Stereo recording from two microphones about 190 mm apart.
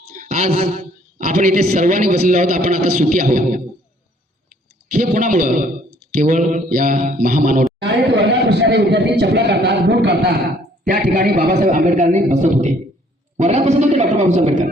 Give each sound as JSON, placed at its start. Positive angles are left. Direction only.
{"t": 0.2, "sound": "a man's voice", "side_deg": -40}
{"t": 4.9, "sound": "speech", "side_deg": -45}
{"t": 7.8, "sound": "a man's voice", "side_deg": -60}
{"t": 10.8, "sound": "a man's voice", "side_deg": -50}